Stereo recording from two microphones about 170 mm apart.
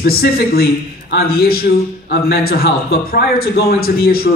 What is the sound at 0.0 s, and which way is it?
A man's voice, 65° left (ahead or behind).